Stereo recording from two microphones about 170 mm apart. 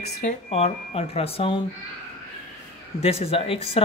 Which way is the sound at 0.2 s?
40° left (ahead or behind).